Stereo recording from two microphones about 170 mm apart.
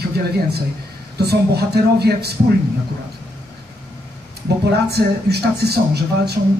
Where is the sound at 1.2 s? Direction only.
70° right (ahead or behind).